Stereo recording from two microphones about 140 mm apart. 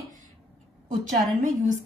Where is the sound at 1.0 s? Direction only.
60° right (ahead or behind).